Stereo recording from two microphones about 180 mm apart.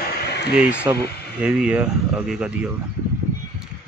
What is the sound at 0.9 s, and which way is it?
Speech, 15° right (ahead or behind).